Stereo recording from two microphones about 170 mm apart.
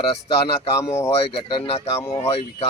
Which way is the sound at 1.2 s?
35° left (ahead or behind).